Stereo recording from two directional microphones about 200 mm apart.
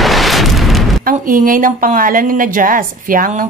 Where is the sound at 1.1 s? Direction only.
45° right (ahead or behind).